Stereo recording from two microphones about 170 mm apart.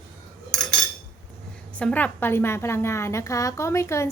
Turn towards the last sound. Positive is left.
turn(degrees=15)  # may be behind; listen again after turning